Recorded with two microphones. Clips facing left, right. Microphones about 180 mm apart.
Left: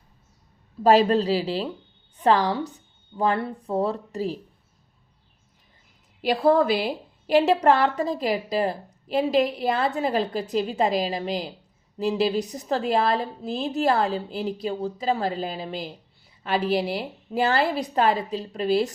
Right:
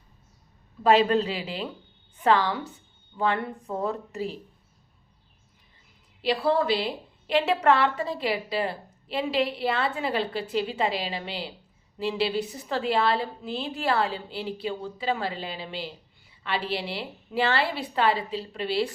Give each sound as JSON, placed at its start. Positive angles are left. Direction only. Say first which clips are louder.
{"t": 0.9, "sound": "a woman's voice", "louder": "left 3 dB", "side_deg": 35}
{"t": 6.2, "sound": "a woman's voice", "louder": "left 4 dB", "side_deg": 45}
{"t": 7.4, "sound": "a woman's voice", "louder": "left 3 dB", "side_deg": 35}